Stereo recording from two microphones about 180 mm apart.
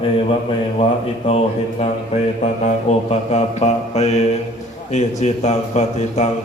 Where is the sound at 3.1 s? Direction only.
40° left (ahead or behind).